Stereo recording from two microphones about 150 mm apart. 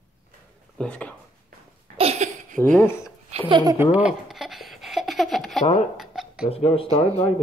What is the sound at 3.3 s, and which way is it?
Speech, 35° right (ahead or behind).